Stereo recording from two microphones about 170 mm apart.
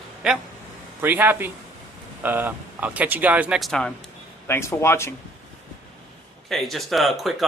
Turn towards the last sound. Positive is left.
turn(degrees=0)  # may be behind; listen again after turning